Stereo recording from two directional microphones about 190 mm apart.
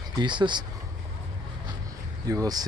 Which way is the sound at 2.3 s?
20° right (ahead or behind).